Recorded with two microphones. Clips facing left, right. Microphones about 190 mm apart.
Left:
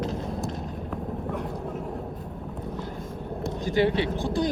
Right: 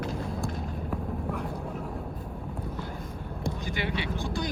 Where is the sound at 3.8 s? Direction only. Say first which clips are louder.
Left 13 dB; 30° left (ahead or behind).